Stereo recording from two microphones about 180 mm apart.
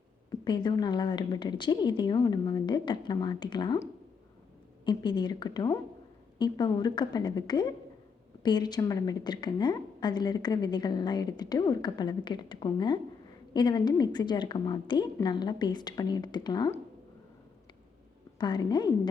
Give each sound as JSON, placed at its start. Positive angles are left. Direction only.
{"t": 0.3, "sound": "a woman's voice", "side_deg": 25}
{"t": 4.9, "sound": "a woman's voice", "side_deg": 25}
{"t": 18.3, "sound": "a woman's voice", "side_deg": 25}